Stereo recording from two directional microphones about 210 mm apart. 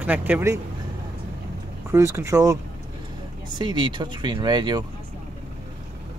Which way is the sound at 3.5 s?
20° right (ahead or behind).